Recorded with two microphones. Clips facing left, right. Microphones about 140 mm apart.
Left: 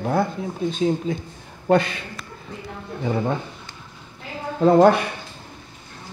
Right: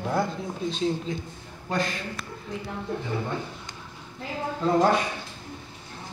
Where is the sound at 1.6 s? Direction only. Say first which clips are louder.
Left 10 dB; 65° left (ahead or behind).